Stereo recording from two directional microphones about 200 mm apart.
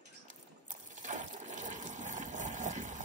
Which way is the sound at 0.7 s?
40° right (ahead or behind).